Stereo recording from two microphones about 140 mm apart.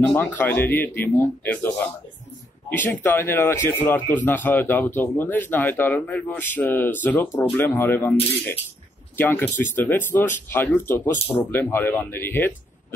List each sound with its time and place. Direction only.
0.0 s a man's voice: 15° left (ahead or behind)
2.7 s a man's voice: 15° left (ahead or behind)